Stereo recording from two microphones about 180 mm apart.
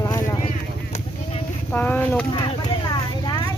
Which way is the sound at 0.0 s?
15° left (ahead or behind).